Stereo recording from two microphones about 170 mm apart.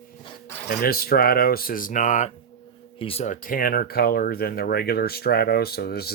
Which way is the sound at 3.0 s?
35° left (ahead or behind).